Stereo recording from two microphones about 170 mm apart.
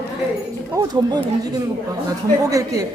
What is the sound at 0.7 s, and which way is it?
Speech, 20° right (ahead or behind).